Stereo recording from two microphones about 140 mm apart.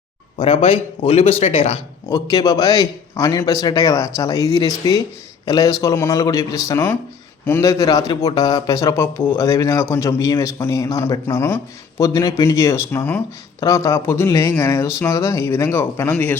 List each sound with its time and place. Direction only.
0.3 s a man's voice: 45° left (ahead or behind)
2.0 s speech: 25° left (ahead or behind)